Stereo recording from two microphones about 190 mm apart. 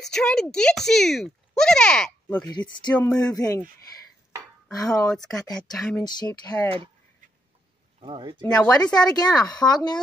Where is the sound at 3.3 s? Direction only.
20° left (ahead or behind).